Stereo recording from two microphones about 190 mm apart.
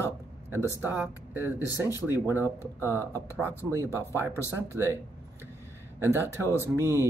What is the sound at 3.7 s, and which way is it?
Speech, 15° right (ahead or behind).